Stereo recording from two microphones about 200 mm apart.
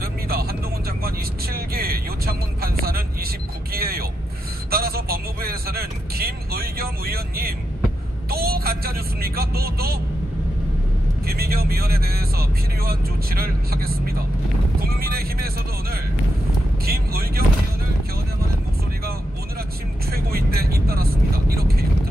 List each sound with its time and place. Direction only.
0.0 s vehicle: 50° right (ahead or behind)
11.2 s speech: 50° right (ahead or behind)
16.8 s vehicle: 50° right (ahead or behind)
20.1 s vehicle: 50° right (ahead or behind)